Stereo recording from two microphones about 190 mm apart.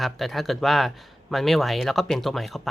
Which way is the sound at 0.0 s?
Centre (ahead or behind).